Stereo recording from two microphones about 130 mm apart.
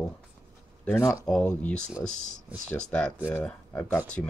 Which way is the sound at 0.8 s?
20° left (ahead or behind).